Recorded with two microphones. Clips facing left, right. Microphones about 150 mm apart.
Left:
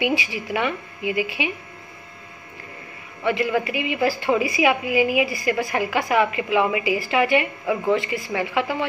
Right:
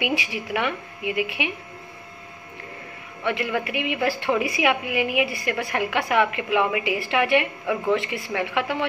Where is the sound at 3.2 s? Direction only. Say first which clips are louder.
Left 4 dB; centre (ahead or behind).